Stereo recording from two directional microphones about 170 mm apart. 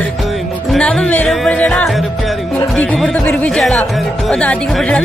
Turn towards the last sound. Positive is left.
turn(degrees=5)  # may be behind; listen again after turning